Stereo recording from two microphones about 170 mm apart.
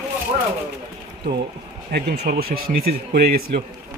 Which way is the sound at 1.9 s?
70° right (ahead or behind).